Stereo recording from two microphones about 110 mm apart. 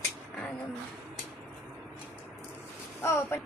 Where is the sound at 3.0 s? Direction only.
25° left (ahead or behind).